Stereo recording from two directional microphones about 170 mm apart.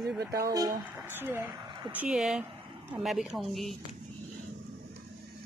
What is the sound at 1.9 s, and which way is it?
Speech, 5° right (ahead or behind).